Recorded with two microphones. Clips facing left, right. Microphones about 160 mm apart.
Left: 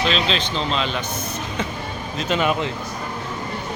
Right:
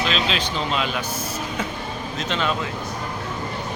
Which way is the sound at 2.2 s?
5° left (ahead or behind).